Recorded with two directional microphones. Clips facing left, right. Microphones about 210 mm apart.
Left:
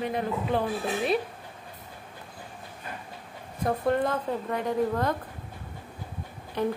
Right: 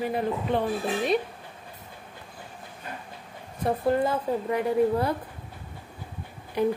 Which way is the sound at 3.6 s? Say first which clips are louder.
Right 1 dB; 5° right (ahead or behind).